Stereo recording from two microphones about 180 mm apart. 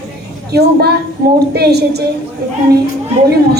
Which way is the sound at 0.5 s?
65° right (ahead or behind).